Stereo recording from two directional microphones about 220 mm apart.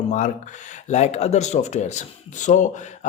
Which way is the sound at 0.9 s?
30° left (ahead or behind).